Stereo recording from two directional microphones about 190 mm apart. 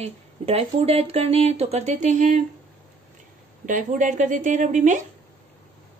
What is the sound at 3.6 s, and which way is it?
A woman's voice, 40° right (ahead or behind).